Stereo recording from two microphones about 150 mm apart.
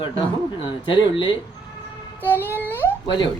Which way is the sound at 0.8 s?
35° left (ahead or behind).